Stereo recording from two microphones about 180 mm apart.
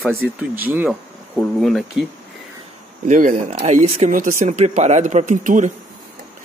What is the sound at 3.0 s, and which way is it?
Speech, 45° right (ahead or behind).